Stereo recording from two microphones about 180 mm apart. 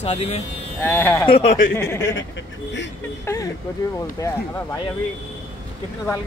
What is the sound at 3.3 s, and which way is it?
Speech, 20° left (ahead or behind).